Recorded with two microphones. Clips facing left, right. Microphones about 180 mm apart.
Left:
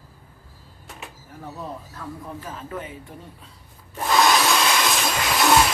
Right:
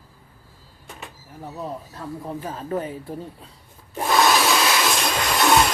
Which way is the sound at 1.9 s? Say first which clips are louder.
Right 4 dB; 30° right (ahead or behind).